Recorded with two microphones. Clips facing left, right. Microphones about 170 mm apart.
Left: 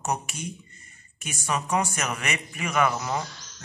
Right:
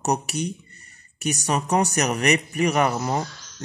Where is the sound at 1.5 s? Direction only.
35° right (ahead or behind).